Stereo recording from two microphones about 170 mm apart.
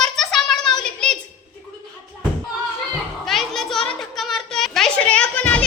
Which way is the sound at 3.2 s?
Centre (ahead or behind).